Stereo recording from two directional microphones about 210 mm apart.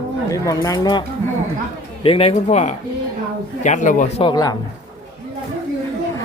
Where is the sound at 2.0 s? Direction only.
25° left (ahead or behind).